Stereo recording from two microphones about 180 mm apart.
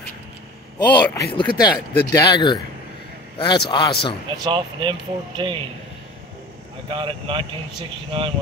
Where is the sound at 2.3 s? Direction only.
25° left (ahead or behind).